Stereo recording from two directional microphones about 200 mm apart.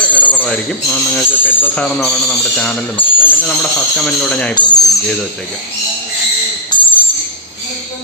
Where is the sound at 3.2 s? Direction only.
10° left (ahead or behind).